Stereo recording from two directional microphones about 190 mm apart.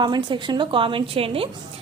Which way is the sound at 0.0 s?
25° right (ahead or behind).